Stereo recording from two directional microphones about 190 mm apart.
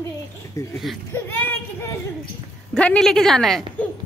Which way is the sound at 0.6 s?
15° left (ahead or behind).